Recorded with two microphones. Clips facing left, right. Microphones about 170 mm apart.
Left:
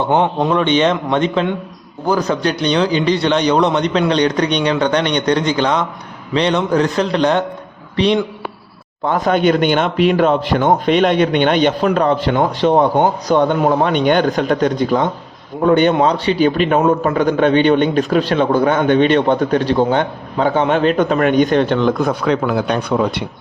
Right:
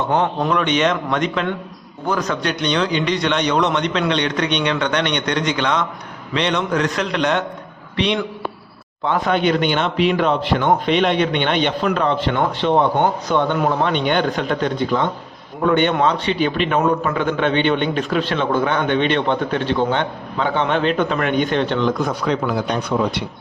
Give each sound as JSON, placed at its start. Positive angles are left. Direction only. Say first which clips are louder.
{"t": 0.0, "sound": "a man's voice", "louder": "left 4 dB", "side_deg": 25}